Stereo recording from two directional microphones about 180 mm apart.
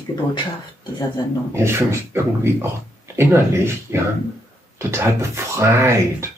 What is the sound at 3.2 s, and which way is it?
Speech, 15° right (ahead or behind).